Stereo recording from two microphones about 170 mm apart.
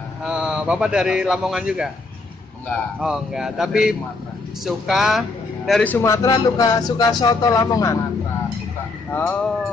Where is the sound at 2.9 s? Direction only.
5° right (ahead or behind); by 7.9 s 20° left (ahead or behind).